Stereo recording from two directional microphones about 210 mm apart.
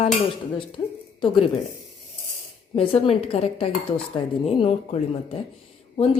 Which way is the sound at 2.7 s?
30° left (ahead or behind).